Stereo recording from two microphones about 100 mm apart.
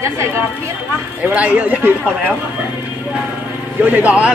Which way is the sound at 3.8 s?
15° right (ahead or behind).